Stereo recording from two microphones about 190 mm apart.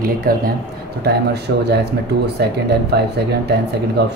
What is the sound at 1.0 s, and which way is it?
Speech, 60° right (ahead or behind).